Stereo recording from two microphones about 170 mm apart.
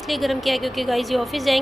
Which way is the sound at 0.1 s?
Centre (ahead or behind).